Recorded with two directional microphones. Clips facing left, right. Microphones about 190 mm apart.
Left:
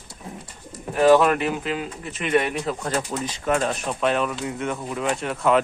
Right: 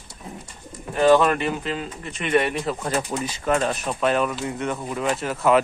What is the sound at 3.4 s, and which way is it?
Speech, centre (ahead or behind).